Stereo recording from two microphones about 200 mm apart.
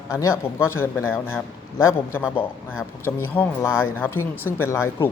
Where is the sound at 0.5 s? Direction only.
10° left (ahead or behind).